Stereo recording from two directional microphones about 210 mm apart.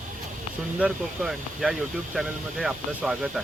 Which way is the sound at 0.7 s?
5° right (ahead or behind).